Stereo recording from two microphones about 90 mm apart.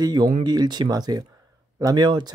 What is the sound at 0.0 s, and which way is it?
Speech, 50° right (ahead or behind).